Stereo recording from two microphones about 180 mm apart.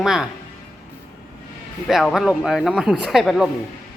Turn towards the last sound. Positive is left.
turn(degrees=0)  # may be behind; listen again after turning